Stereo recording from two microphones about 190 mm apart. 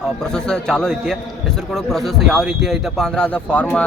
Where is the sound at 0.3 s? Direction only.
5° left (ahead or behind).